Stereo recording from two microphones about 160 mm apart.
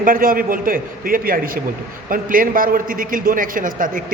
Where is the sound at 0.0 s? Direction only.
60° right (ahead or behind).